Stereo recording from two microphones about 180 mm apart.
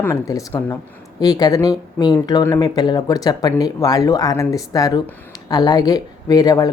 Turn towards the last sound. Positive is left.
turn(degrees=20)  # may be behind; listen again after turning